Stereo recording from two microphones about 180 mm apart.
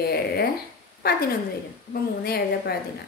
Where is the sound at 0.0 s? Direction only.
60° left (ahead or behind).